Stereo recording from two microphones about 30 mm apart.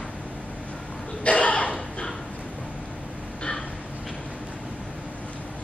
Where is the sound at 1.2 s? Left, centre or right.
Left.